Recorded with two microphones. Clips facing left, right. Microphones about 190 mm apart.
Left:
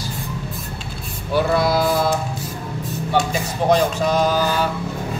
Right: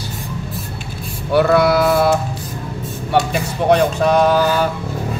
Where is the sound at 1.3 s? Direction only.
65° right (ahead or behind).